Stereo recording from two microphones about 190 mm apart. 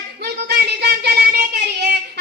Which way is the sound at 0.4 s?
55° right (ahead or behind).